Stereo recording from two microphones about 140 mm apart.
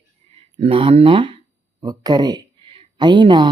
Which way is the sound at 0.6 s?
40° right (ahead or behind).